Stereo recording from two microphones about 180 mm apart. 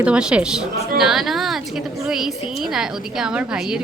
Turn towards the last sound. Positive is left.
turn(degrees=-5)  # may be behind; listen again after turning